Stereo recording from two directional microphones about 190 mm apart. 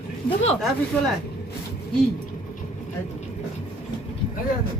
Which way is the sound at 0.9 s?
10° left (ahead or behind).